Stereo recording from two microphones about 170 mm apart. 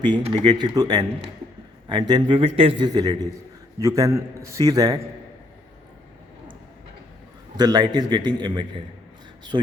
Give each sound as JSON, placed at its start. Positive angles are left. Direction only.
{"t": 0.0, "sound": "a man's voice", "side_deg": -30}
{"t": 7.5, "sound": "a man's voice", "side_deg": -25}